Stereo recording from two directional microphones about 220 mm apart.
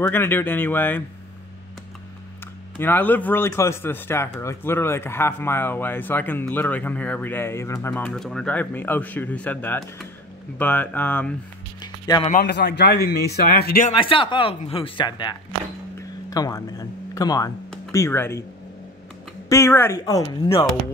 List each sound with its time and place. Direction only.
0.0 s speech: 10° left (ahead or behind)
2.8 s speech: 10° left (ahead or behind)
11.8 s music: 20° left (ahead or behind)
12.3 s a man's voice: 45° left (ahead or behind)
13.9 s speech: 25° left (ahead or behind)
19.5 s speech: 10° left (ahead or behind)